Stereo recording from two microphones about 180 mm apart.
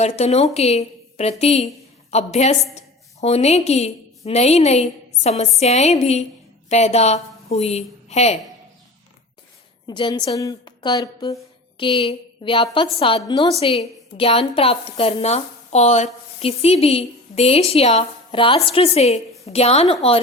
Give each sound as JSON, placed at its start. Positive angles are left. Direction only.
{"t": 0.0, "sound": "a woman's voice", "side_deg": 35}
{"t": 9.8, "sound": "a woman's voice", "side_deg": 25}